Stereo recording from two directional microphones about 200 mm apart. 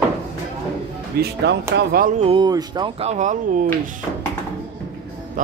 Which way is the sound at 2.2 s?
25° right (ahead or behind).